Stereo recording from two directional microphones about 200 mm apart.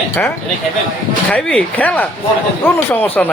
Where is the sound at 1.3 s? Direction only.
5° left (ahead or behind).